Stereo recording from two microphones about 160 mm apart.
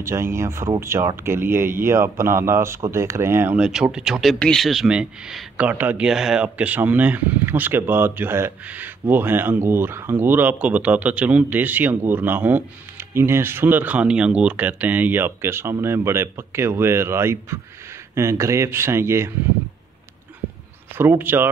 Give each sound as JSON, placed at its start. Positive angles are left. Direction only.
{"t": 0.0, "sound": "speech", "side_deg": -15}
{"t": 20.9, "sound": "speech", "side_deg": -15}